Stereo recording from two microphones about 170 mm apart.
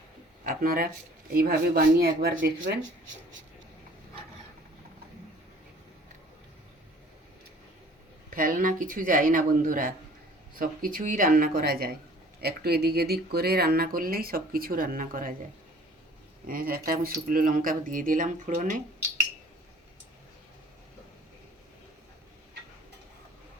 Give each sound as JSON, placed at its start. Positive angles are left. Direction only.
{"t": 0.4, "sound": "speech", "side_deg": -60}
{"t": 8.4, "sound": "speech", "side_deg": -55}
{"t": 16.5, "sound": "speech", "side_deg": -55}